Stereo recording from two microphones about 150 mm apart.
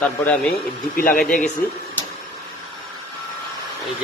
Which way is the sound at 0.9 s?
70° left (ahead or behind).